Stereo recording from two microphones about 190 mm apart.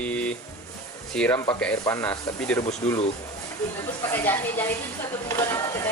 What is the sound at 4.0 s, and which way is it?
Speech, 10° left (ahead or behind).